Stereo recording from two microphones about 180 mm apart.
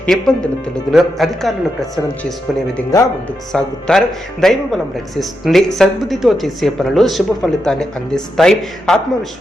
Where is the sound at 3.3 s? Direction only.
5° left (ahead or behind).